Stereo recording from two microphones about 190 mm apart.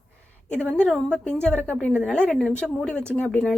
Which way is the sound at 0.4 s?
5° left (ahead or behind).